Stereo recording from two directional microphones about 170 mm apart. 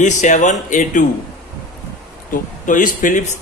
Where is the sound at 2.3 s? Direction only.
50° left (ahead or behind).